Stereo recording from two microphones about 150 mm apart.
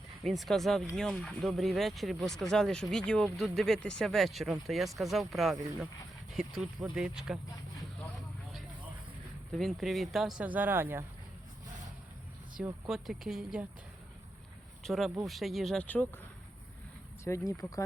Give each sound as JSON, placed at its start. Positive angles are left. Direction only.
{"t": 0.3, "sound": "speech", "side_deg": 0}
{"t": 5.5, "sound": "speech", "side_deg": -20}
{"t": 6.3, "sound": "speech", "side_deg": -5}
{"t": 9.5, "sound": "speech", "side_deg": 0}
{"t": 12.9, "sound": "speech", "side_deg": 0}
{"t": 14.8, "sound": "speech", "side_deg": 0}
{"t": 17.2, "sound": "speech", "side_deg": 20}